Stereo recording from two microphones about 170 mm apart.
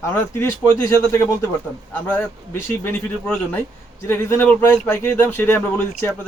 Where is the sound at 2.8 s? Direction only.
10° left (ahead or behind).